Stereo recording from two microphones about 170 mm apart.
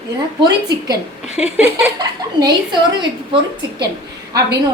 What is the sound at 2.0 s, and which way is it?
A woman's voice, 25° right (ahead or behind).